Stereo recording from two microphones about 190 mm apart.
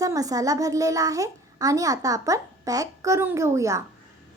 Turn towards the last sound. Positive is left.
turn(degrees=-15)  # may be behind; listen again after turning